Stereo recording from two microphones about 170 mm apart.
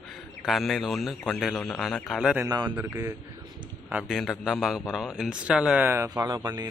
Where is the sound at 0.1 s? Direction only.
Centre (ahead or behind).